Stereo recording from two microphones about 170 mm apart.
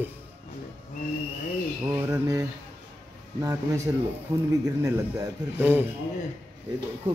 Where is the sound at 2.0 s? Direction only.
20° right (ahead or behind).